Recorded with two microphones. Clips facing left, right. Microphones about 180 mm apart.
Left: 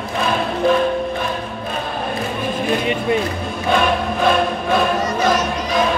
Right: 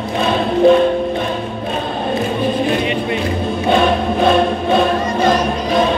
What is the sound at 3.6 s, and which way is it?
Music, 25° right (ahead or behind).